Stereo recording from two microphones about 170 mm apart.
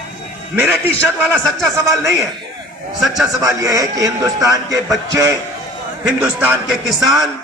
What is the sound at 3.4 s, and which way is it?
A man's voice, 20° right (ahead or behind).